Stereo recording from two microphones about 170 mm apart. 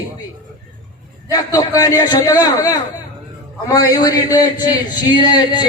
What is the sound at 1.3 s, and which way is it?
A man's voice, 20° left (ahead or behind).